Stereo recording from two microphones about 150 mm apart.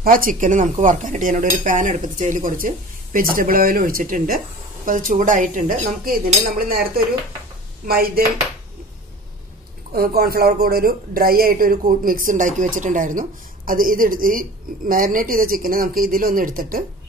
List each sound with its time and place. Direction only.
0.0 s speech: 70° right (ahead or behind)
9.9 s speech: 80° right